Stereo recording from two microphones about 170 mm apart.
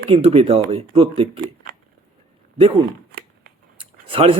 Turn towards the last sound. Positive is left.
turn(degrees=-35)  # may be behind; listen again after turning